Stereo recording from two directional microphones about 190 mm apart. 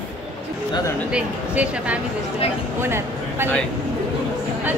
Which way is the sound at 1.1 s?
5° right (ahead or behind).